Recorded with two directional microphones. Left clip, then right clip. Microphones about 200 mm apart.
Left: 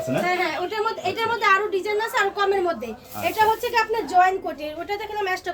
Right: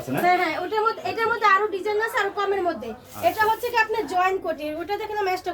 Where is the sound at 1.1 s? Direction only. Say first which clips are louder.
Even; 45° left (ahead or behind).